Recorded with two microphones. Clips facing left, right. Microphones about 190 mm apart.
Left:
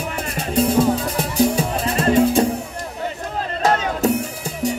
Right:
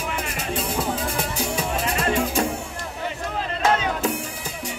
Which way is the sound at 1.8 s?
35° left (ahead or behind).